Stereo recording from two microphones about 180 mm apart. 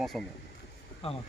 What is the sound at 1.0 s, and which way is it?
Speech, 30° left (ahead or behind).